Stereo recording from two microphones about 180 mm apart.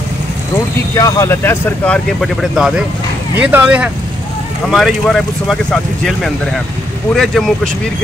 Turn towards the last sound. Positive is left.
turn(degrees=0)  # may be behind; listen again after turning